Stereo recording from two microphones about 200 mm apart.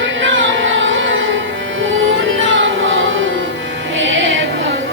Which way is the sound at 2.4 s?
70° right (ahead or behind).